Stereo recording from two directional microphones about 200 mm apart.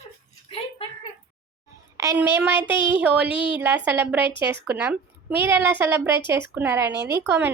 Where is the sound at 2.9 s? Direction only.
5° right (ahead or behind).